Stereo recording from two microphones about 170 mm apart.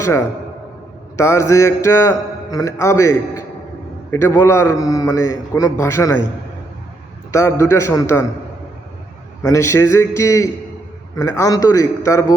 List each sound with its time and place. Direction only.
0.0 s a man's voice: 15° left (ahead or behind)
7.3 s a man's voice: 15° left (ahead or behind)
9.4 s a man's voice: 20° left (ahead or behind)